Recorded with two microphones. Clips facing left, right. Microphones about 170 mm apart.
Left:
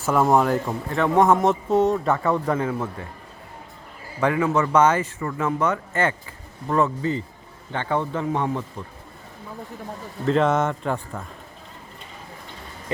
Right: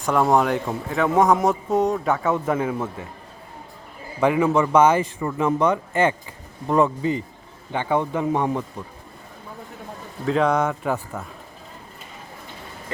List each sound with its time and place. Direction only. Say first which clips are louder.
0.0 s a man's voice: even; 5° left (ahead or behind)
4.2 s speech: right 2 dB; 15° right (ahead or behind)
10.2 s a man's voice: even; centre (ahead or behind)